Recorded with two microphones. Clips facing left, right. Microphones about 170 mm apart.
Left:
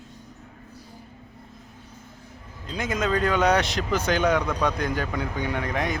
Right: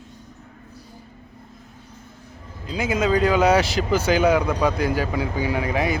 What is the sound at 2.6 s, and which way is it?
Speech, 5° right (ahead or behind).